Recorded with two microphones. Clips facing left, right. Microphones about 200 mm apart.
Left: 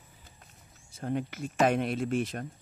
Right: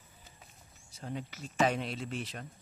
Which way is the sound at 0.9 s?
55° left (ahead or behind).